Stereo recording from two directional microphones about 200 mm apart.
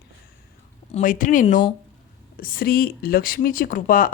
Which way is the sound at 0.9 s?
40° left (ahead or behind).